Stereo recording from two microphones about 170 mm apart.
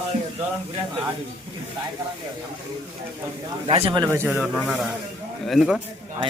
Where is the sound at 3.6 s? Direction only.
35° right (ahead or behind).